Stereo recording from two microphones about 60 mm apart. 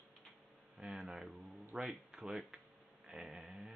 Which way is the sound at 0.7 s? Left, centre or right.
Centre.